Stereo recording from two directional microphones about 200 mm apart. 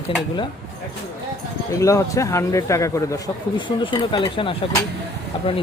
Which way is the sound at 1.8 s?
15° left (ahead or behind).